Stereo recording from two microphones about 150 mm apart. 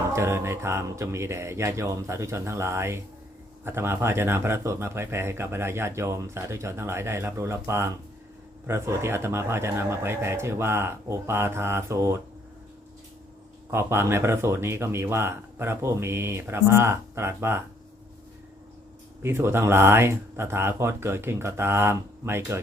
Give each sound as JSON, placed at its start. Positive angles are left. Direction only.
{"t": 0.1, "sound": "speech", "side_deg": -20}
{"t": 13.7, "sound": "speech", "side_deg": -15}
{"t": 19.2, "sound": "speech", "side_deg": -15}